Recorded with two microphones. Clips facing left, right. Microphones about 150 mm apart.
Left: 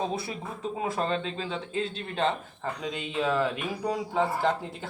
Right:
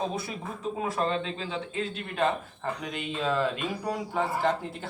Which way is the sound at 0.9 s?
35° left (ahead or behind).